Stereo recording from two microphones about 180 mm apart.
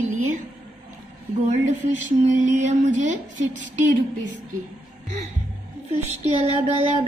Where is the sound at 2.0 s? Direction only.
40° right (ahead or behind).